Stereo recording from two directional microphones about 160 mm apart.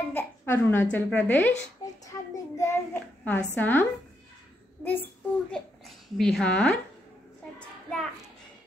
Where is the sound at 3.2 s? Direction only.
10° left (ahead or behind).